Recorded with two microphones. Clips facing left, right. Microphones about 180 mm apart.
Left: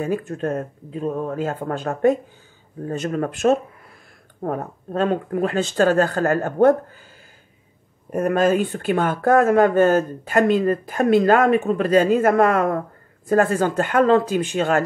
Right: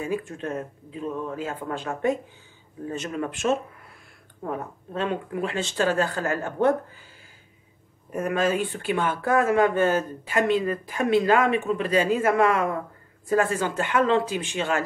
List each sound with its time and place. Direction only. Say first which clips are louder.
0.0 s speech: left 5 dB; 40° left (ahead or behind)
8.1 s speech: left 6 dB; 45° left (ahead or behind)